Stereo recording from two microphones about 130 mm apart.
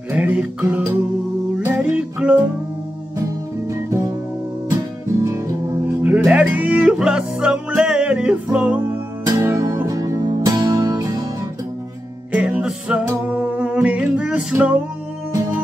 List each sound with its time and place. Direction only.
0.1 s music: 10° right (ahead or behind)
3.7 s music: 25° right (ahead or behind)
5.2 s music: 25° right (ahead or behind)
9.2 s music: 25° right (ahead or behind)
12.3 s music: 10° right (ahead or behind)